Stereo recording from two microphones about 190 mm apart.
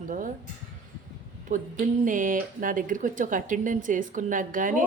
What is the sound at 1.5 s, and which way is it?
A woman's voice, 40° right (ahead or behind).